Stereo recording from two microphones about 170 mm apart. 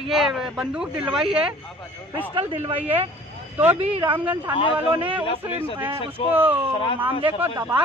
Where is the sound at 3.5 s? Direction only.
10° right (ahead or behind).